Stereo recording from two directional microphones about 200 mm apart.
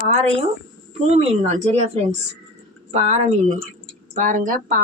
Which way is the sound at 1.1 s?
35° right (ahead or behind).